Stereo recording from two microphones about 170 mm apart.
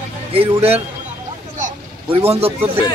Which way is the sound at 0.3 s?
35° right (ahead or behind).